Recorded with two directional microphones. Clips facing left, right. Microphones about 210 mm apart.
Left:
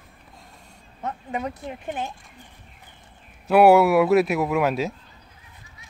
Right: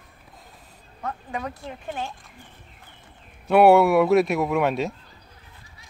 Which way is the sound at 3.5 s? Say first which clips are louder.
Even; centre (ahead or behind).